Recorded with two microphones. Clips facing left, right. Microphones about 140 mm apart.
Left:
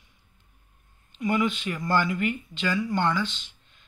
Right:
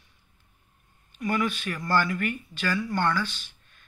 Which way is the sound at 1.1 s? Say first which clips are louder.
Left 2 dB; 20° left (ahead or behind).